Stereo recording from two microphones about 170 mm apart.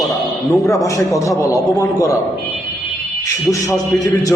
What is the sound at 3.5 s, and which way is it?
Speech, 20° left (ahead or behind).